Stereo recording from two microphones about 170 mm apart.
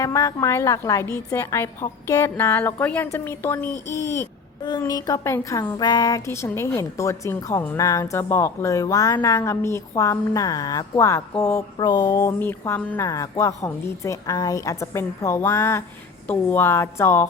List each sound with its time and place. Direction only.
0.0 s a woman's voice: 20° left (ahead or behind)